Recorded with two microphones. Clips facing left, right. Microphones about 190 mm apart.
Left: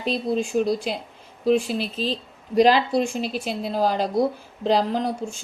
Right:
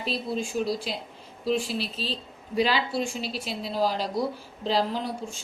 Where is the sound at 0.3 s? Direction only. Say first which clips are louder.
Left 5 dB; 55° left (ahead or behind).